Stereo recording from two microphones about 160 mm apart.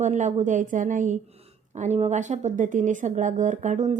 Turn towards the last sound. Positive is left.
turn(degrees=-50)  # may be behind; listen again after turning